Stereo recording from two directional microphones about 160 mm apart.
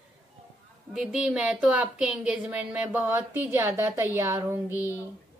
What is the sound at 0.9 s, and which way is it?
A woman's voice, 5° right (ahead or behind).